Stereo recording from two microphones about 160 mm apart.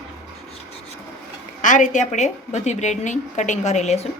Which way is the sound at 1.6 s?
50° left (ahead or behind).